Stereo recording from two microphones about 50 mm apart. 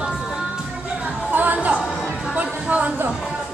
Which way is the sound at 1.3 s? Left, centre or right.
Right.